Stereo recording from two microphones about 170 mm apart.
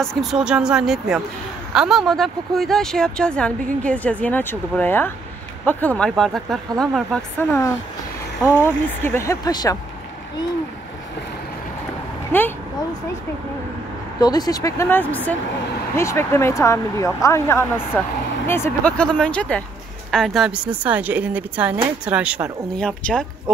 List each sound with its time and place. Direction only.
0.0 s speech: centre (ahead or behind); by 9.8 s 25° left (ahead or behind)
12.3 s speech: 10° left (ahead or behind)
14.2 s speech: 25° left (ahead or behind); by 22.5 s 5° right (ahead or behind)
22.8 s speech: 5° left (ahead or behind)